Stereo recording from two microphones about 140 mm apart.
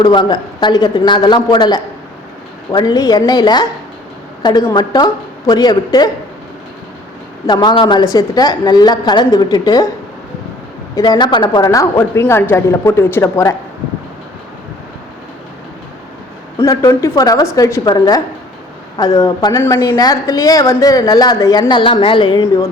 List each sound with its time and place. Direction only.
0.0 s a woman's voice: 35° left (ahead or behind)
4.7 s a woman's voice: 30° left (ahead or behind)
7.4 s a woman's voice: 30° left (ahead or behind)
10.9 s a woman's voice: 30° left (ahead or behind)
16.6 s a woman's voice: 25° left (ahead or behind)
22.4 s a woman's voice: 25° left (ahead or behind)